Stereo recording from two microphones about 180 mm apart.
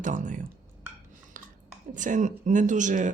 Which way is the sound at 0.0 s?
45° right (ahead or behind).